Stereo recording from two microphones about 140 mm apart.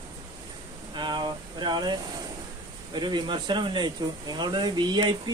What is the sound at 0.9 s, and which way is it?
Speech, 35° right (ahead or behind).